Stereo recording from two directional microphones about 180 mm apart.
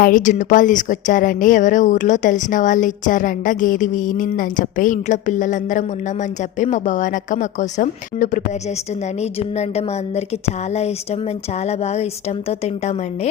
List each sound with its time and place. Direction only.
0.0 s a woman's voice: 45° left (ahead or behind)
9.6 s a woman's voice: 35° left (ahead or behind)